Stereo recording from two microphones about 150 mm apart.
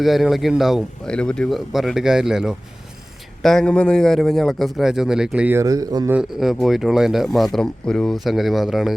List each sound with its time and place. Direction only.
0.0 s speech: centre (ahead or behind)
5.5 s speech: 25° right (ahead or behind)
6.1 s speech: 5° right (ahead or behind)